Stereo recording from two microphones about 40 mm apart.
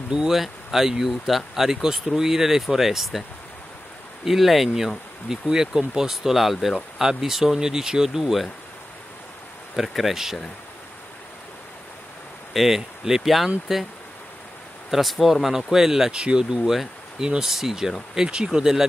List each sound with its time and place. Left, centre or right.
0.3 s speech: centre
9.8 s speech: centre
12.5 s speech: centre
14.9 s speech: centre
16.1 s speech: right
16.6 s speech: centre
17.2 s speech: centre